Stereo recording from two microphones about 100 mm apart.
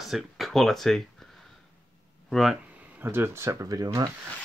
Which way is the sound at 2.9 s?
20° right (ahead or behind).